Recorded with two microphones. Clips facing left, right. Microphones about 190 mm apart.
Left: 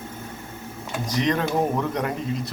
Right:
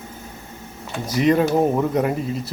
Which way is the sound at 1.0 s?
10° right (ahead or behind).